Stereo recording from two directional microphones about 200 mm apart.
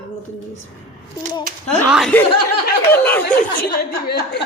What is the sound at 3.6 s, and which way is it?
Speech, 50° left (ahead or behind).